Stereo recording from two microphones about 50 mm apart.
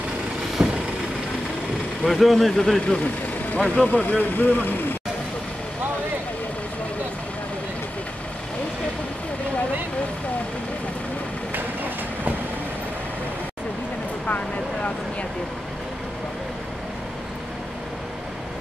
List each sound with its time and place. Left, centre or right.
0.6 s vehicle: centre
2.0 s speech: centre
3.5 s speech: left
11.5 s train: right
14.2 s vehicle: left